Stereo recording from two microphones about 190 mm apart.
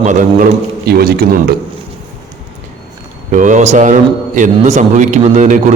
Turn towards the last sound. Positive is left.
turn(degrees=-40)  # may be behind; listen again after turning